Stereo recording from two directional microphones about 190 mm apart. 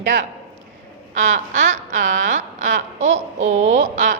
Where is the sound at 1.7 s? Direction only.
40° right (ahead or behind).